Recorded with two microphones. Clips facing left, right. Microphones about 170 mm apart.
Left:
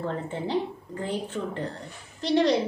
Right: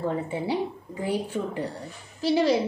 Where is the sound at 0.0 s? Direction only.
10° right (ahead or behind).